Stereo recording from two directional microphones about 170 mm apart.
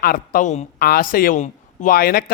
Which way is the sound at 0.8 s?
60° left (ahead or behind).